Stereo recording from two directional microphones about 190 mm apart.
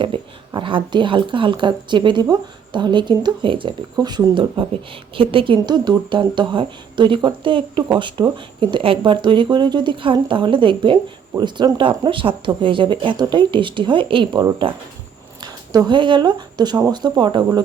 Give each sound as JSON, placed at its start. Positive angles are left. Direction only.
{"t": 0.0, "sound": "speech", "side_deg": -25}